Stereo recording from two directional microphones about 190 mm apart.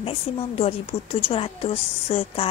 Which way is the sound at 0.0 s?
30° left (ahead or behind).